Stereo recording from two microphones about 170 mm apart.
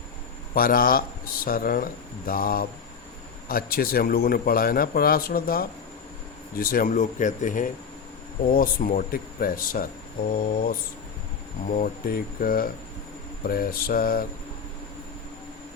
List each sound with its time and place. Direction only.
0.5 s a man's voice: 60° left (ahead or behind)